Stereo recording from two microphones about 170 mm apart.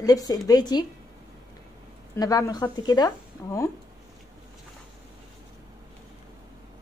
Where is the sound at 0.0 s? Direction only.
20° left (ahead or behind).